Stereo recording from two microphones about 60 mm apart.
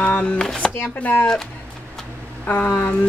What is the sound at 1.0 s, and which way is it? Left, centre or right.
Speech, left.